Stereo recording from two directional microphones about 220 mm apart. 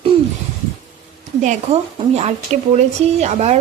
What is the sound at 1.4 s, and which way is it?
Speech, 30° right (ahead or behind).